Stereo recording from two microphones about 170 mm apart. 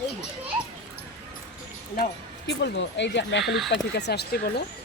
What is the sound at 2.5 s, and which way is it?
Speech, 90° left.